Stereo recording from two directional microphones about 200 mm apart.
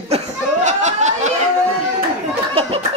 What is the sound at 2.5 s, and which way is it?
Speech, 25° right (ahead or behind).